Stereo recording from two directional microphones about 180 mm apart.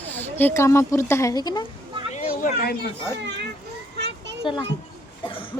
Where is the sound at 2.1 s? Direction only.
45° left (ahead or behind).